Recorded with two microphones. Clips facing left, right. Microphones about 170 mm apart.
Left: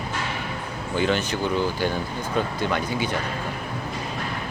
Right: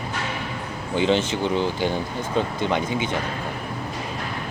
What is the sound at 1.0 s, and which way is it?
Speech, 25° right (ahead or behind).